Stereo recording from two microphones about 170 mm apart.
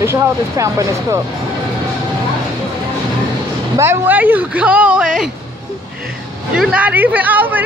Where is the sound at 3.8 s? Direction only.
15° right (ahead or behind).